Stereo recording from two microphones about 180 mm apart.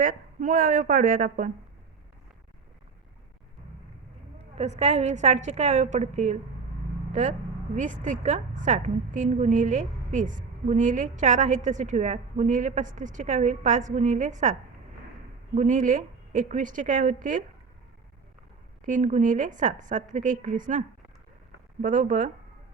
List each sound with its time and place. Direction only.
0.0 s a woman's voice: 50° right (ahead or behind)
4.5 s a woman's voice: 40° right (ahead or behind)
15.5 s a woman's voice: 45° right (ahead or behind)
18.9 s a woman's voice: 45° right (ahead or behind)